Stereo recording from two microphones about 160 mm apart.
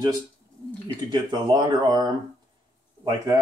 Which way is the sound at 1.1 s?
25° right (ahead or behind).